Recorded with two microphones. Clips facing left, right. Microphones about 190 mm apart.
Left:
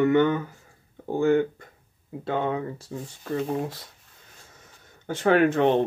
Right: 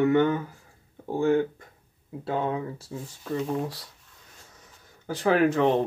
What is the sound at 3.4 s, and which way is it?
Speech, 25° left (ahead or behind).